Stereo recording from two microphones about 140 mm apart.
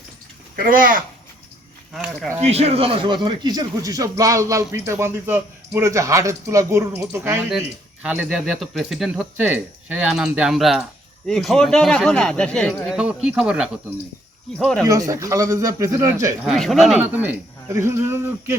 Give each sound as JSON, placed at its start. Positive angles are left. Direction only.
{"t": 0.5, "sound": "speech", "side_deg": -85}
{"t": 1.9, "sound": "speech", "side_deg": -5}
{"t": 2.4, "sound": "a man's voice", "side_deg": -50}
{"t": 8.0, "sound": "speech", "side_deg": -10}
{"t": 12.9, "sound": "speech", "side_deg": -5}
{"t": 14.8, "sound": "a man's voice", "side_deg": -25}
{"t": 16.5, "sound": "speech", "side_deg": 0}
{"t": 17.0, "sound": "a man's voice", "side_deg": -10}